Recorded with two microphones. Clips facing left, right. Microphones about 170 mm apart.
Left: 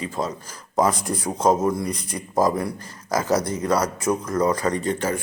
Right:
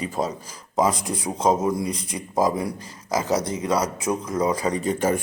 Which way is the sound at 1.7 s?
10° right (ahead or behind).